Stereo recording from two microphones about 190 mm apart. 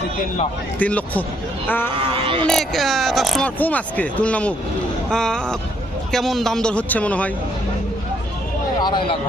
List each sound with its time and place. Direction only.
0.8 s speech: 10° left (ahead or behind)
2.2 s speech: 25° right (ahead or behind)
2.5 s speech: centre (ahead or behind)
8.8 s speech: 25° left (ahead or behind)